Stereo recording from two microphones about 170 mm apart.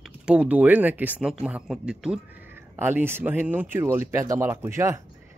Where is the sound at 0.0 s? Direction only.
5° right (ahead or behind).